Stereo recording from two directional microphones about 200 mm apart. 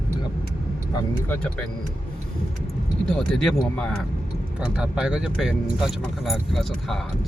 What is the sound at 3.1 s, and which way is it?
Speech, 5° left (ahead or behind).